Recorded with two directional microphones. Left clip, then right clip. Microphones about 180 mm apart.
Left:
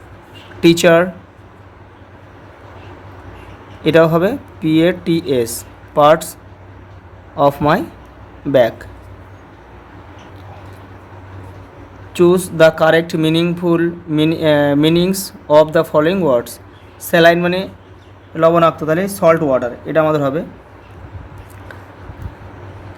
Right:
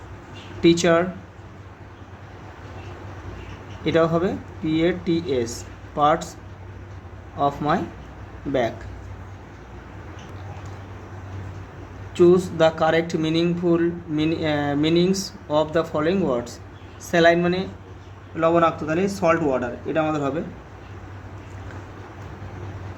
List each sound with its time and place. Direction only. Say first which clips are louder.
0.6 s speech: left 7 dB; 55° left (ahead or behind)
3.8 s speech: left 9 dB; 55° left (ahead or behind)
7.3 s speech: left 9 dB; 55° left (ahead or behind)
12.1 s speech: left 4 dB; 55° left (ahead or behind)